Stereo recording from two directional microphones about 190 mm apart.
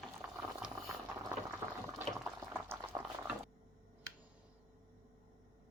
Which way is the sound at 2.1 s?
5° right (ahead or behind).